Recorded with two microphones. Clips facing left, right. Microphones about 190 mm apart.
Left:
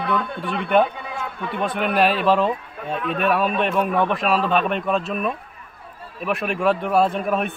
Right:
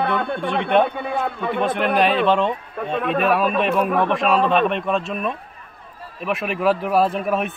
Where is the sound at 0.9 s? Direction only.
60° right (ahead or behind).